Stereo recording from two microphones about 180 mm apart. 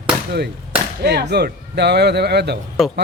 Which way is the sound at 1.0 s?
70° right (ahead or behind).